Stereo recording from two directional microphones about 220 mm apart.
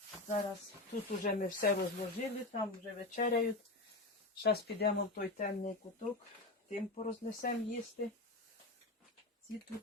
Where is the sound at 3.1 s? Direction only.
40° left (ahead or behind).